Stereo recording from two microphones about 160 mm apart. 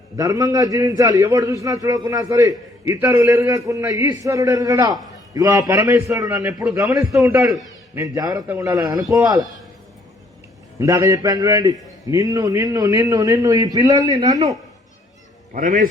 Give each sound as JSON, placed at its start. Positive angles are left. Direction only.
{"t": 0.2, "sound": "a man's voice", "side_deg": -20}
{"t": 10.8, "sound": "a man's voice", "side_deg": -20}
{"t": 15.5, "sound": "a man's voice", "side_deg": -55}